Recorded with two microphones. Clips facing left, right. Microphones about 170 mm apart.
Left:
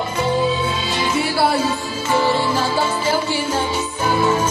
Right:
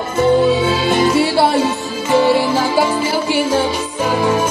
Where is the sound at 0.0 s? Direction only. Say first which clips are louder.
Right 6 dB; 50° right (ahead or behind); by 0.9 s 75° right (ahead or behind).